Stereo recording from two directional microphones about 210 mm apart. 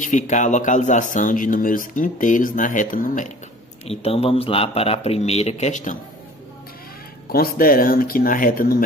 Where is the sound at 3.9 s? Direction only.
30° left (ahead or behind).